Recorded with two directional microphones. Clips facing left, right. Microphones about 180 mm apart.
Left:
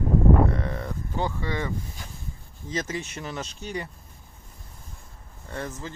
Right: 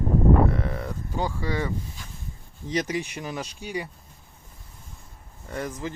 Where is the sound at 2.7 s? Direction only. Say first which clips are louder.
Right 4 dB; 15° right (ahead or behind).